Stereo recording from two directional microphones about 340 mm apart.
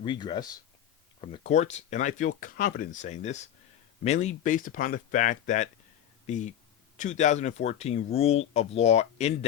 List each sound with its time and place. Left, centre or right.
0.0 s speech: centre